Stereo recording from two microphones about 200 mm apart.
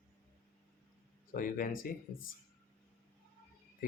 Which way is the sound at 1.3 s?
45° left (ahead or behind).